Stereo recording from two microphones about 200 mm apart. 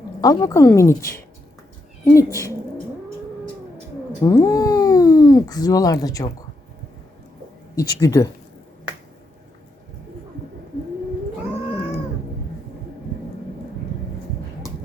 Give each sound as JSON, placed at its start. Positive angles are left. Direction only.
{"t": 0.2, "sound": "speech", "side_deg": 20}
{"t": 4.2, "sound": "speech", "side_deg": 15}
{"t": 7.8, "sound": "speech", "side_deg": 15}